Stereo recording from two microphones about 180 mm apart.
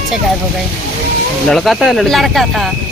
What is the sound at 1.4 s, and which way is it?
Speech, centre (ahead or behind).